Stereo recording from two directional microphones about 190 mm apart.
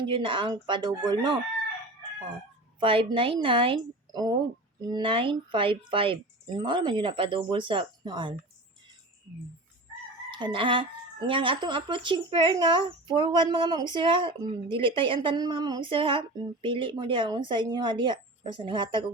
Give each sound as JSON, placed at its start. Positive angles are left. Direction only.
{"t": 0.1, "sound": "a woman's voice", "side_deg": -25}
{"t": 2.8, "sound": "a woman's voice", "side_deg": -25}
{"t": 10.3, "sound": "a woman's voice", "side_deg": -25}